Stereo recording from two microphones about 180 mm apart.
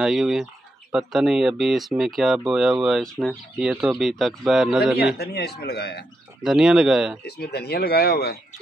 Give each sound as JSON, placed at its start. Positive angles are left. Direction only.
{"t": 0.0, "sound": "speech", "side_deg": 0}
{"t": 5.1, "sound": "speech", "side_deg": 65}
{"t": 6.4, "sound": "speech", "side_deg": -5}
{"t": 7.2, "sound": "speech", "side_deg": 60}